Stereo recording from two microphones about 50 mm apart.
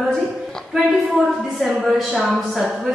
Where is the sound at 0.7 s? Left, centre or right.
Centre.